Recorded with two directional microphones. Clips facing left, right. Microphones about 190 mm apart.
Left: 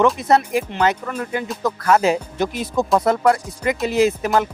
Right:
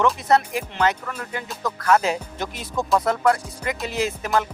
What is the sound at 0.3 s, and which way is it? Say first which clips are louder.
Speech: left 3 dB; 15° left (ahead or behind).